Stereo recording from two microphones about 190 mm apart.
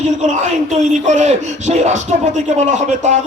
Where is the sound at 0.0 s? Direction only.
40° right (ahead or behind).